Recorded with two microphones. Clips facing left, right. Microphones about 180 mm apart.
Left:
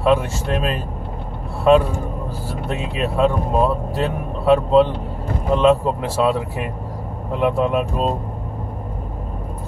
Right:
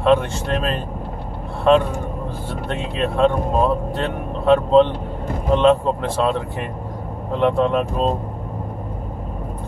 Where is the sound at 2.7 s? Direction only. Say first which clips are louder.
Even; 5° left (ahead or behind).